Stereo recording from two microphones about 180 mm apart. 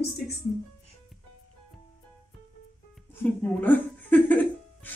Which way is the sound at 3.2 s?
10° left (ahead or behind).